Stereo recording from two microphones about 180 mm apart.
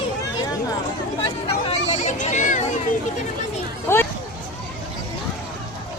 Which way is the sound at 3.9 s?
15° left (ahead or behind).